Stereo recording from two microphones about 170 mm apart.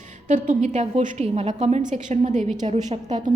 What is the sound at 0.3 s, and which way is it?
A woman's voice, 50° right (ahead or behind).